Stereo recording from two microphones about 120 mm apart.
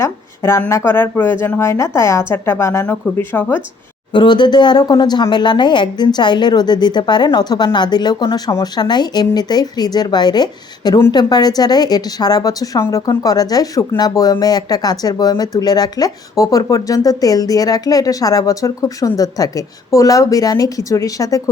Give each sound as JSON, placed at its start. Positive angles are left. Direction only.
{"t": 0.0, "sound": "a sound", "side_deg": 20}
{"t": 0.7, "sound": "a woman's voice", "side_deg": 20}
{"t": 4.1, "sound": "speech", "side_deg": 40}